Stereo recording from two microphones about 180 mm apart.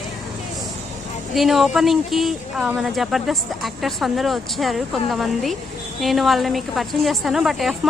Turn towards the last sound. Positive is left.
turn(degrees=0)  # may be behind; listen again after turning